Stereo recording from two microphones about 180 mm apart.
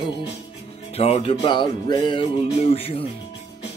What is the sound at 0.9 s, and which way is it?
Music, 35° left (ahead or behind).